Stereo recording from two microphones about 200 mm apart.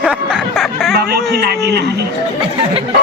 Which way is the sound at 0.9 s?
55° right (ahead or behind).